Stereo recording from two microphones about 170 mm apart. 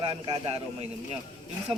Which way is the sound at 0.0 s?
30° right (ahead or behind).